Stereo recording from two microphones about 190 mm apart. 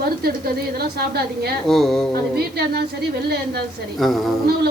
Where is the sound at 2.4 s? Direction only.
55° right (ahead or behind).